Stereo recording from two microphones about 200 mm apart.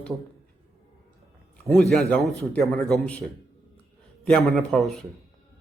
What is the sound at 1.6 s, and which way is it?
A man's voice, centre (ahead or behind).